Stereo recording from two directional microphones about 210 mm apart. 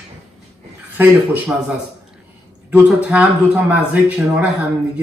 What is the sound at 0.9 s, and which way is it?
Speech, 10° right (ahead or behind).